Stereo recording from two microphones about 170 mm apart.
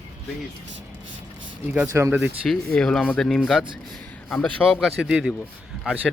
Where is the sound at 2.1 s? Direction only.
Centre (ahead or behind).